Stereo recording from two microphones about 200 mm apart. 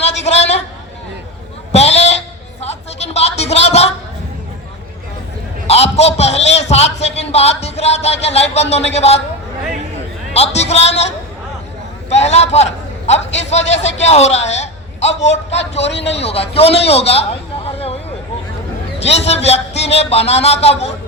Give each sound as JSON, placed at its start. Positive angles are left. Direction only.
{"t": 0.3, "sound": "a man's voice", "side_deg": 35}
{"t": 1.7, "sound": "a sound", "side_deg": 30}
{"t": 5.6, "sound": "a man's voice", "side_deg": 30}
{"t": 10.3, "sound": "a man's voice", "side_deg": 30}
{"t": 17.7, "sound": "a sound", "side_deg": 30}
{"t": 18.9, "sound": "a man's voice", "side_deg": 30}